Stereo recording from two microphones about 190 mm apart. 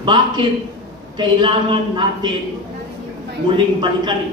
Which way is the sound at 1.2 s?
25° right (ahead or behind).